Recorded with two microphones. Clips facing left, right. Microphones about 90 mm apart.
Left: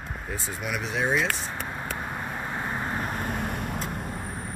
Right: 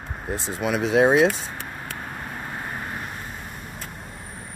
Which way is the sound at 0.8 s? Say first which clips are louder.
Right 9 dB; 65° right (ahead or behind).